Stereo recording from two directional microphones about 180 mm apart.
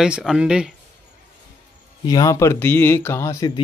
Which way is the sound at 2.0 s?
20° left (ahead or behind).